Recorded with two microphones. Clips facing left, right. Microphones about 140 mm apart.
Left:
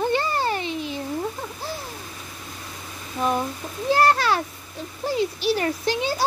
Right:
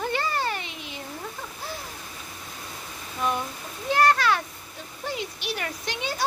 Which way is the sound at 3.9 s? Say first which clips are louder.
Left 2 dB; 30° left (ahead or behind).